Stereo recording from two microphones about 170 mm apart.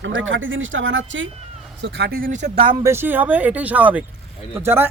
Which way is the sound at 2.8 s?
15° right (ahead or behind).